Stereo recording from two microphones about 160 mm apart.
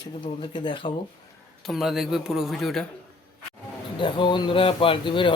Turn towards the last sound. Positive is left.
turn(degrees=30)  # may be behind; listen again after turning